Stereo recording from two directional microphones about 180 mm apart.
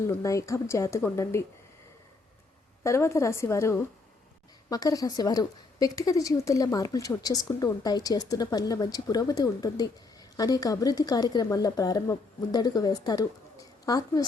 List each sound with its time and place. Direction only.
0.1 s speech: 15° left (ahead or behind)
2.8 s a woman's voice: 15° left (ahead or behind)